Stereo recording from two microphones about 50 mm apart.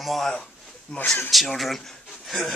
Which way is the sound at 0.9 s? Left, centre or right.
Centre.